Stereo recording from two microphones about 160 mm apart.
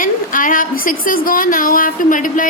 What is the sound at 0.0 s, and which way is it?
Speech, 55° left (ahead or behind).